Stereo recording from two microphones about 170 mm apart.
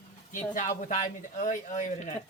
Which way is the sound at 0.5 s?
50° left (ahead or behind).